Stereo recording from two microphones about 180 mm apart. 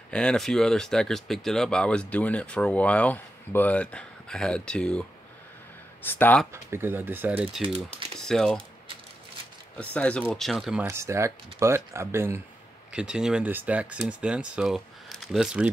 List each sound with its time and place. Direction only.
0.1 s speech: 5° left (ahead or behind)
6.0 s speech: 10° left (ahead or behind)
6.5 s speech: 15° right (ahead or behind)
8.2 s speech: 5° left (ahead or behind)
9.8 s speech: 5° left (ahead or behind)
10.9 s speech: 15° right (ahead or behind)
12.9 s speech: 5° right (ahead or behind)